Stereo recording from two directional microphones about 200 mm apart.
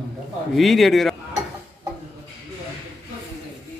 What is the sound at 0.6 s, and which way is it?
Speech, centre (ahead or behind).